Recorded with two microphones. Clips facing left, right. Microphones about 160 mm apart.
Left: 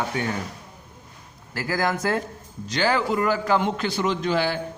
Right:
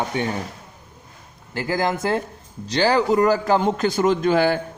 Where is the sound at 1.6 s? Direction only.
25° right (ahead or behind); by 4.5 s 50° right (ahead or behind).